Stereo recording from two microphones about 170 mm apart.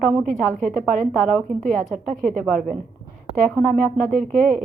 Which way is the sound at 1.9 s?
50° right (ahead or behind).